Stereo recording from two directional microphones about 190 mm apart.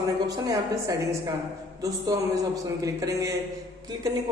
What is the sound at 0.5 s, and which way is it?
A man's voice, 15° right (ahead or behind).